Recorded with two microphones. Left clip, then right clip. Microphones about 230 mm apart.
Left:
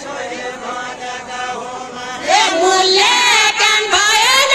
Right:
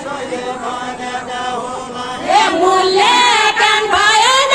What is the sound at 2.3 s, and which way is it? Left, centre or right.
Music, left.